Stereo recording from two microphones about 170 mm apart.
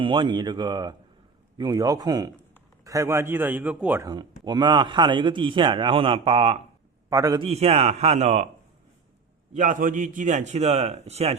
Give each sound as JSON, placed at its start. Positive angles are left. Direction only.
{"t": 0.0, "sound": "a man's voice", "side_deg": -30}
{"t": 4.1, "sound": "speech", "side_deg": -25}
{"t": 7.1, "sound": "speech", "side_deg": -20}
{"t": 7.4, "sound": "a man's voice", "side_deg": -35}
{"t": 9.5, "sound": "a man's voice", "side_deg": -50}